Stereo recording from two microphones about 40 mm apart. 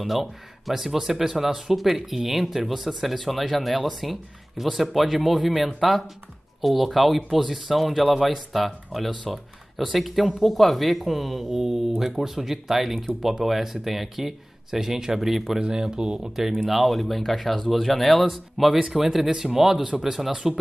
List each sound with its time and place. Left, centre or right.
0.0 s speech: centre
15.6 s speech: centre
16.6 s speech: centre
18.8 s speech: centre